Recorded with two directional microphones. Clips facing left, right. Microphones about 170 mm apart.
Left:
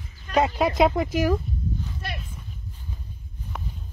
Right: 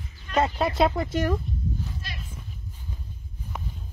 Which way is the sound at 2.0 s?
60° left (ahead or behind).